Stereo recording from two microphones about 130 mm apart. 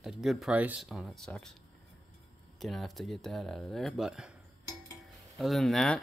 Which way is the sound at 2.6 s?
Centre (ahead or behind).